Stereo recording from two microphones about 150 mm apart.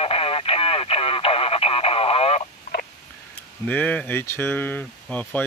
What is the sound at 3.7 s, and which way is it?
Speech, 10° left (ahead or behind).